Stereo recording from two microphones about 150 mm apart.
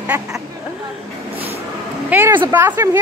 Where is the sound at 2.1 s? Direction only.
15° right (ahead or behind).